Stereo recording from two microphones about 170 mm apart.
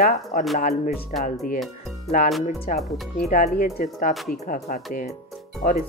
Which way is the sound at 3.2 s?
50° left (ahead or behind).